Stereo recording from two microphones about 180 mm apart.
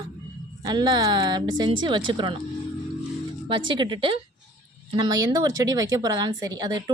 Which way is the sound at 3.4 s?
30° right (ahead or behind).